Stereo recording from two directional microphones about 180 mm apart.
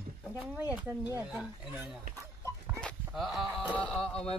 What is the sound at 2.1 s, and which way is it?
Chicken, 15° right (ahead or behind).